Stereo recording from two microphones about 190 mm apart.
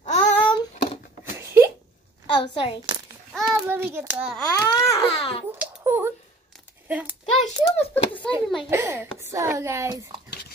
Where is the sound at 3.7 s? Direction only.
10° right (ahead or behind).